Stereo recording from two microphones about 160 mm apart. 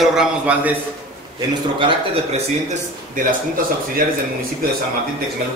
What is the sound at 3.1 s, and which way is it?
Speech, 65° right (ahead or behind).